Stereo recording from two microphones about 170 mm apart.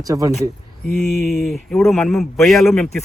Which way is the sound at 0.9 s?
Centre (ahead or behind).